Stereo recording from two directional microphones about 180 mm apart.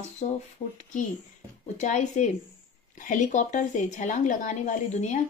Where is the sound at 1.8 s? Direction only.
40° left (ahead or behind).